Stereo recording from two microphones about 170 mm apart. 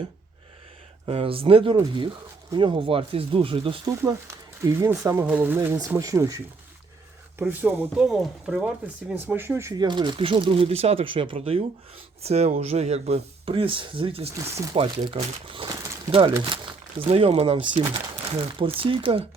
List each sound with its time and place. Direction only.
1.0 s speech: 35° right (ahead or behind)
3.8 s speech: 20° right (ahead or behind); by 14.3 s 35° right (ahead or behind)
14.3 s speech: 20° right (ahead or behind)
14.7 s speech: 30° right (ahead or behind)
15.7 s a sound: 20° right (ahead or behind)
17.0 s speech: 35° right (ahead or behind)